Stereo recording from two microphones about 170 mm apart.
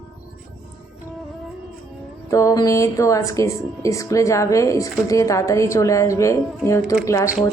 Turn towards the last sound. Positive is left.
turn(degrees=20)  # may be behind; listen again after turning